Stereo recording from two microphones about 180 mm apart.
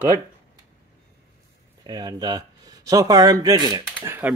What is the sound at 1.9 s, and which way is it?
Speech, 25° right (ahead or behind).